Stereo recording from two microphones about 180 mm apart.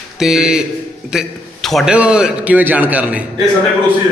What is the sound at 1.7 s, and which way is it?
A man's voice, 5° right (ahead or behind).